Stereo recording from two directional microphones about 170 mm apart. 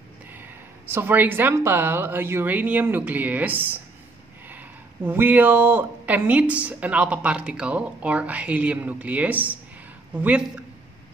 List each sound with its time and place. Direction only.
0.9 s speech: 10° right (ahead or behind)